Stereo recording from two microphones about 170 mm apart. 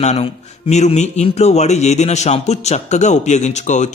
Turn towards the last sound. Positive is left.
turn(degrees=45)  # may be behind; listen again after turning